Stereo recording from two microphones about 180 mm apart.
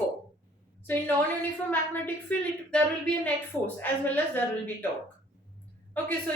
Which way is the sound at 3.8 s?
10° left (ahead or behind).